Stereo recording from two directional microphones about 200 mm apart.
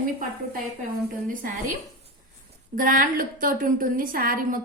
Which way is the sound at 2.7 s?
40° right (ahead or behind).